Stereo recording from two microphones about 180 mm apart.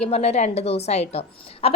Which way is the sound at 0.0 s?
35° left (ahead or behind).